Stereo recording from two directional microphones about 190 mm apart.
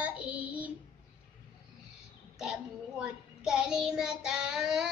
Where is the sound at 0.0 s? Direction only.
10° right (ahead or behind).